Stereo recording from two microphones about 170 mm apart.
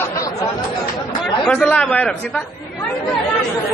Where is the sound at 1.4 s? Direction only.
5° left (ahead or behind).